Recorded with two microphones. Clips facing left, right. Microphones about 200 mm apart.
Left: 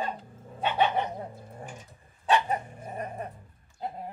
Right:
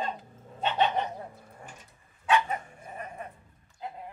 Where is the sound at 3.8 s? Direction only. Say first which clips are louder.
Left 4 dB; 40° left (ahead or behind).